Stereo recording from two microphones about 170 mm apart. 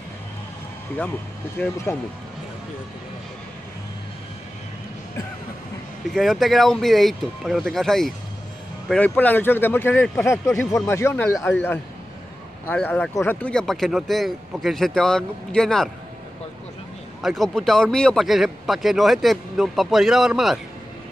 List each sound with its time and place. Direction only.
1.9 s speech: 15° left (ahead or behind)
6.0 s speech: centre (ahead or behind)
17.2 s speech: centre (ahead or behind)